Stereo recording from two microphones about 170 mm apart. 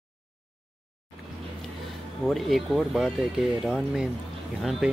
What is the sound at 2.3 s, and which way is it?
Speech, centre (ahead or behind).